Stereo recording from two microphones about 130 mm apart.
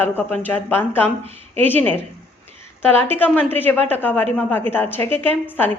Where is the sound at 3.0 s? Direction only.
15° left (ahead or behind).